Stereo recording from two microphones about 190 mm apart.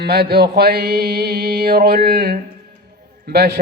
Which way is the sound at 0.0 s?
55° right (ahead or behind).